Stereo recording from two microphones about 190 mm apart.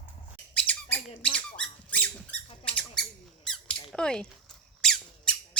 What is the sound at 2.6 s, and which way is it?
Squawk, 5° left (ahead or behind).